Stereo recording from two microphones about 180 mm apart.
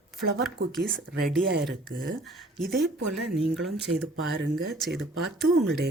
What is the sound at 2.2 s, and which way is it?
Speech, centre (ahead or behind).